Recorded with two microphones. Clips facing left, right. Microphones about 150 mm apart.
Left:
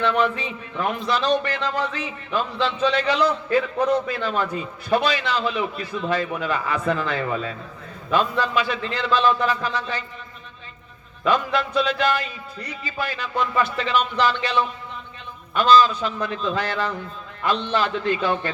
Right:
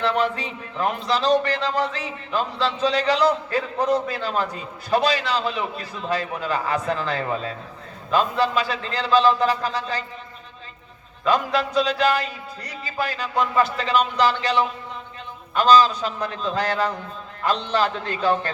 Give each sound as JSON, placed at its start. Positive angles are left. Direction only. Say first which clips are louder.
{"t": 0.0, "sound": "speech", "louder": "left 1 dB", "side_deg": -35}
{"t": 11.8, "sound": "speech", "louder": "right 2 dB", "side_deg": -35}
{"t": 15.5, "sound": "speech", "louder": "even", "side_deg": -40}